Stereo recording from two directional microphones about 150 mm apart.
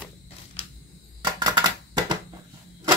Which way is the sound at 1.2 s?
30° right (ahead or behind).